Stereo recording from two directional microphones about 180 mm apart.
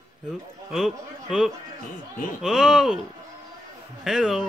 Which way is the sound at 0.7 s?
5° right (ahead or behind).